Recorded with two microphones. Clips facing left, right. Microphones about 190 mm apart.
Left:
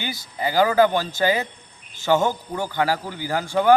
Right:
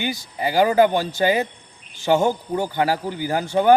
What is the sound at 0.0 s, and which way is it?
A man's voice, 20° right (ahead or behind).